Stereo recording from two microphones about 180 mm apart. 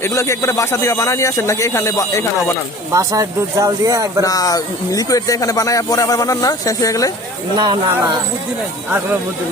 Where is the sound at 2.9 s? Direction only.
15° right (ahead or behind).